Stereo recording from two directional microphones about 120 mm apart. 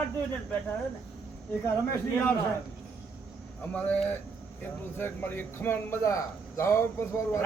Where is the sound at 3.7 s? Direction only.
10° left (ahead or behind).